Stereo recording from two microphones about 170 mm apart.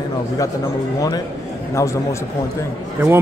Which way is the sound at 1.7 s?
15° left (ahead or behind).